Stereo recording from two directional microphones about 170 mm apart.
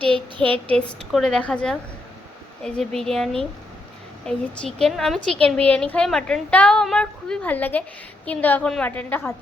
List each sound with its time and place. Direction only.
0.0 s speech: 30° right (ahead or behind)
0.7 s a woman's voice: 5° left (ahead or behind)
4.3 s a woman's voice: 5° left (ahead or behind)